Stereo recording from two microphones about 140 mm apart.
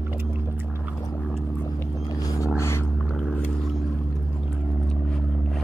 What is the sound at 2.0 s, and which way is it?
Vehicle, 25° left (ahead or behind).